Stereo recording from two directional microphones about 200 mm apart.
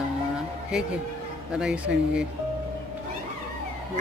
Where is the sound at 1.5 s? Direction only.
5° right (ahead or behind).